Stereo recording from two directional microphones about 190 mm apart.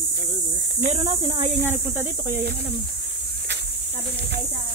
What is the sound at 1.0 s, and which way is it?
Speech, 20° right (ahead or behind).